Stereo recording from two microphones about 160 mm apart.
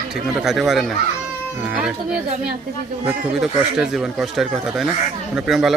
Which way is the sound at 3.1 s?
Centre (ahead or behind).